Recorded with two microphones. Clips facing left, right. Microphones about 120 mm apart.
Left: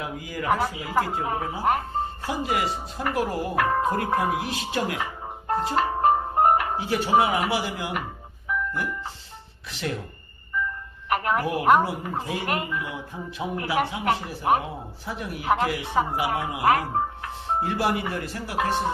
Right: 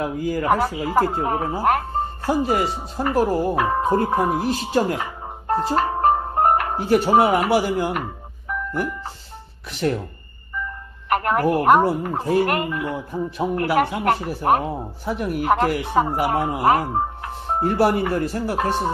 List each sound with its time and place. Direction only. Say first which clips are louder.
0.0 s speech: right 8 dB; 45° right (ahead or behind)
3.5 s speech: right 2 dB; 20° right (ahead or behind)
4.3 s speech: right 6 dB; 35° right (ahead or behind)
5.5 s music: right 4 dB; 35° right (ahead or behind)
6.8 s speech: right 5 dB; 45° right (ahead or behind)
8.5 s music: right 3 dB; 45° right (ahead or behind)
9.7 s speech: right 8 dB; 45° right (ahead or behind)
11.1 s speech: right 5 dB; 50° right (ahead or behind)
16.7 s speech: right 3 dB; 25° right (ahead or behind)
17.6 s speech: right 7 dB; 40° right (ahead or behind)